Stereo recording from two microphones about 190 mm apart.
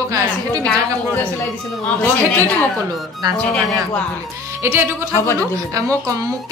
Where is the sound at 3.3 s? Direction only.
5° left (ahead or behind).